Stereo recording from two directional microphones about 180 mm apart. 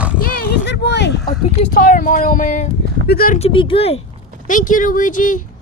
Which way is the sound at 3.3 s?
30° left (ahead or behind).